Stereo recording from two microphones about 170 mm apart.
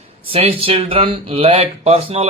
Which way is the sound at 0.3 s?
35° right (ahead or behind).